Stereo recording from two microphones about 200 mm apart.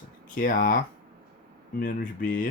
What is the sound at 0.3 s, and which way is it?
Speech, 45° left (ahead or behind).